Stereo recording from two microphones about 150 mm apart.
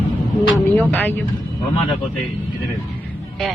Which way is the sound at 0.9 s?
15° left (ahead or behind).